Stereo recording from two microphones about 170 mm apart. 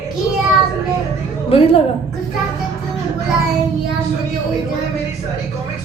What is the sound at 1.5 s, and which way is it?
Speech, 35° left (ahead or behind).